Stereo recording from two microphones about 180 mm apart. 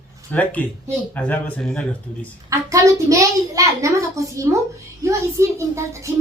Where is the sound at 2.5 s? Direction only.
15° right (ahead or behind).